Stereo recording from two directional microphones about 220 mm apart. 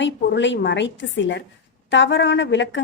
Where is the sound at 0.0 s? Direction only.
55° left (ahead or behind).